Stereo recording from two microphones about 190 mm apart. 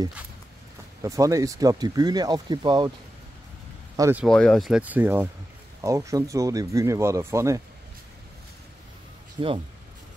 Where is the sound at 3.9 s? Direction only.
15° right (ahead or behind).